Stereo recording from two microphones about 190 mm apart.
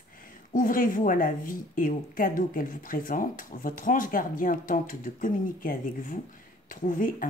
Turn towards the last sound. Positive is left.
turn(degrees=45)  # may be behind; listen again after turning